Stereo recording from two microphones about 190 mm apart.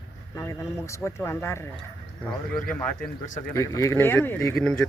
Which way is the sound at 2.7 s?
5° left (ahead or behind).